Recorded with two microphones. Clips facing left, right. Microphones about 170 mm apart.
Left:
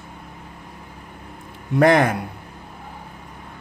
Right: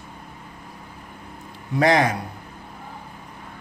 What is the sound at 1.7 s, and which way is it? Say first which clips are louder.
Speech: left 3 dB; 55° left (ahead or behind).